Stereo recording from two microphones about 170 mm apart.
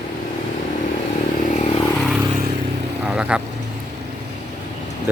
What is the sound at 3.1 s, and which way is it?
Speech, 5° right (ahead or behind).